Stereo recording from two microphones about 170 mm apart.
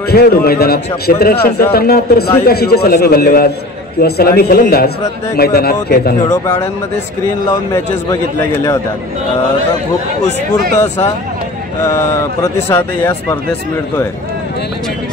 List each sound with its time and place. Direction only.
0.1 s a man's voice: 65° left (ahead or behind)
6.3 s speech: 15° left (ahead or behind)
7.7 s speech: 15° left (ahead or behind)
11.8 s speech: 15° left (ahead or behind)